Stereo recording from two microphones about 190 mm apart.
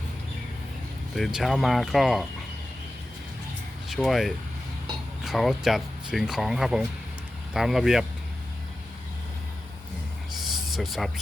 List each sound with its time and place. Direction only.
1.1 s speech: centre (ahead or behind)
3.8 s speech: centre (ahead or behind)
10.7 s speech: centre (ahead or behind)